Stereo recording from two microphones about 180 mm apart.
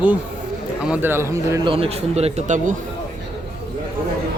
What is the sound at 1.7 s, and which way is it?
Speech, 35° right (ahead or behind).